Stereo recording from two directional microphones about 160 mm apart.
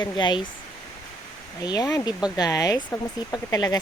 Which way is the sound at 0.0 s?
30° left (ahead or behind).